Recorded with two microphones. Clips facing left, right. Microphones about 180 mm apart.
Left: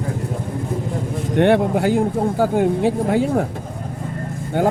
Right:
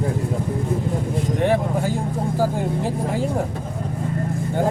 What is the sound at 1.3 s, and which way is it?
Speech, 70° left (ahead or behind).